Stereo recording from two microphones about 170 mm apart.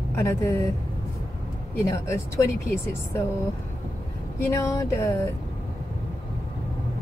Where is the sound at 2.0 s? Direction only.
15° left (ahead or behind).